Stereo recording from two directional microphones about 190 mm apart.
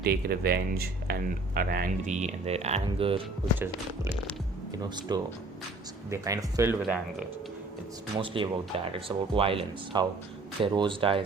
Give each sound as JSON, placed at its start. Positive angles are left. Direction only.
{"t": 0.0, "sound": "speech", "side_deg": -55}
{"t": 4.8, "sound": "speech", "side_deg": -20}
{"t": 6.8, "sound": "speech", "side_deg": -5}
{"t": 8.2, "sound": "speech", "side_deg": -25}